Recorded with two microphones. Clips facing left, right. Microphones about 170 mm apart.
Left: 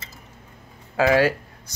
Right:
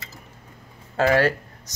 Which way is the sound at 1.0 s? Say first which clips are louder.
Left 1 dB; 5° left (ahead or behind).